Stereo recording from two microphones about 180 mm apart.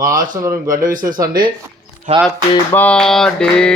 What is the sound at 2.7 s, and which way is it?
Mantra, 5° left (ahead or behind).